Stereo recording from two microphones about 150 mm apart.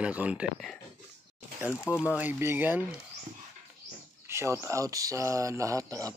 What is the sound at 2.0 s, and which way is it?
Speech, 10° right (ahead or behind).